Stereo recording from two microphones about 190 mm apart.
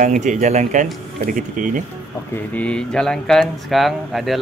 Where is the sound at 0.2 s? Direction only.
40° right (ahead or behind).